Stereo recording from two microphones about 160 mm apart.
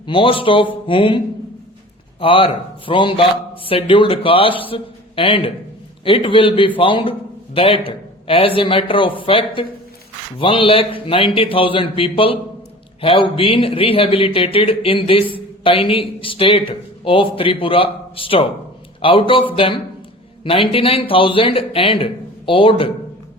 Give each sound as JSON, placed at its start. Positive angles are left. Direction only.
{"t": 0.1, "sound": "a man's voice", "side_deg": 35}
{"t": 2.2, "sound": "a man's voice", "side_deg": 35}